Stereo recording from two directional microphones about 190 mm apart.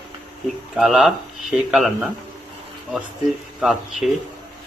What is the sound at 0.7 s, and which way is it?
A man's voice, centre (ahead or behind).